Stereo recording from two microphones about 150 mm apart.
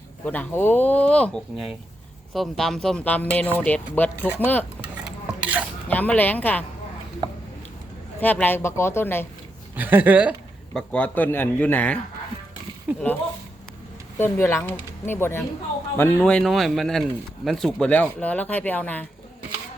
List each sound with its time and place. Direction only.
0.3 s speech: 15° left (ahead or behind)
5.0 s stir: 10° right (ahead or behind)
5.9 s speech: 10° left (ahead or behind)
8.2 s speech: 10° left (ahead or behind)
9.7 s speech: 10° right (ahead or behind)
10.8 s speech: 10° left (ahead or behind)
12.9 s a sound: 10° right (ahead or behind)
14.2 s speech: 15° left (ahead or behind)